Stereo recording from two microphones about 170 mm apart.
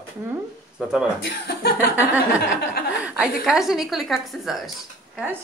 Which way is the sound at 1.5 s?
65° left (ahead or behind).